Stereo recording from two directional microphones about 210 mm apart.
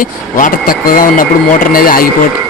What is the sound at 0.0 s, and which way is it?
Speech, 40° left (ahead or behind).